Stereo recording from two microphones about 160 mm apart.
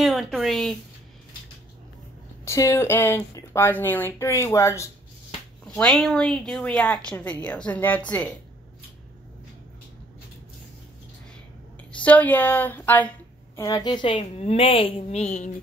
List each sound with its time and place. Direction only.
0.0 s a sound: centre (ahead or behind)
2.4 s speech: 20° left (ahead or behind)
5.8 s a woman's voice: centre (ahead or behind)
12.0 s speech: 10° left (ahead or behind)
13.6 s a woman's voice: 25° left (ahead or behind); by 15.5 s 50° left (ahead or behind)